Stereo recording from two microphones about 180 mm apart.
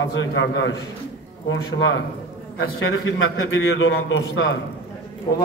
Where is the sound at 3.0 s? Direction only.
90° left.